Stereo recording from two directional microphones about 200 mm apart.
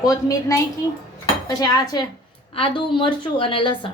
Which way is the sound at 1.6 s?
20° left (ahead or behind).